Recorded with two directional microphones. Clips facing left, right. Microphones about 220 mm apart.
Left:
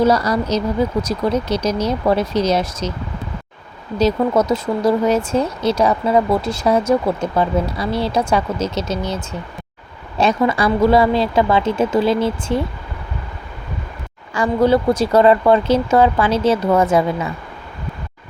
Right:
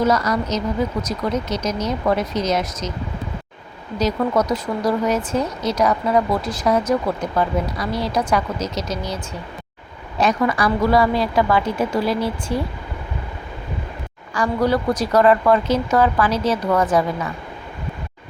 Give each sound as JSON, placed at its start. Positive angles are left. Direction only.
{"t": 0.0, "sound": "speech", "side_deg": 30}
{"t": 3.9, "sound": "speech", "side_deg": 25}
{"t": 10.2, "sound": "speech", "side_deg": 25}
{"t": 14.3, "sound": "speech", "side_deg": 25}